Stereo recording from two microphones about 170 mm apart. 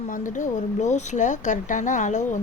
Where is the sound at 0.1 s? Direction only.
50° left (ahead or behind).